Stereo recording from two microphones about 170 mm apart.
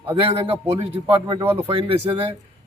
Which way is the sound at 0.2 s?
35° right (ahead or behind).